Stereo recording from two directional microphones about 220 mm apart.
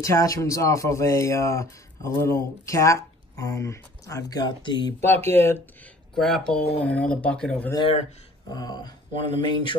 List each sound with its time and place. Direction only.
0.0 s speech: 15° left (ahead or behind)
7.7 s mantra: 25° left (ahead or behind)